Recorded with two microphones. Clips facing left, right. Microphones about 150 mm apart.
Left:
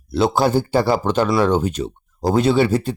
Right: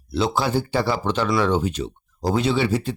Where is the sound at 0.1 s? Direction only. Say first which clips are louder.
Left 5 dB; 50° left (ahead or behind).